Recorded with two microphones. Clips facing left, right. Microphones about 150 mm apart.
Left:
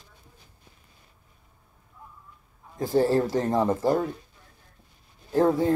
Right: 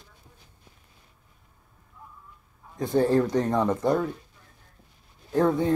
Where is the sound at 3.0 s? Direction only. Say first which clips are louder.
Even; 35° left (ahead or behind).